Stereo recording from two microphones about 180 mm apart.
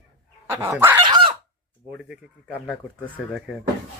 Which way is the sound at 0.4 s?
15° right (ahead or behind).